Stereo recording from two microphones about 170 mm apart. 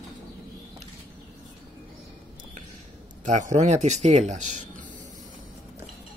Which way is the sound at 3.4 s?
45° right (ahead or behind).